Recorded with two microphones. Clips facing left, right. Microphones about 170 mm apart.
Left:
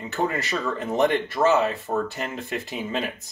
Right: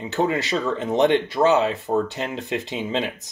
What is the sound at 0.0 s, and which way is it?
Speech, 20° right (ahead or behind).